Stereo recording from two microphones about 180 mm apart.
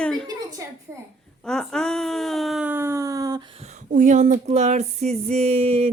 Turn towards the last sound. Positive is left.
turn(degrees=-35)  # may be behind; listen again after turning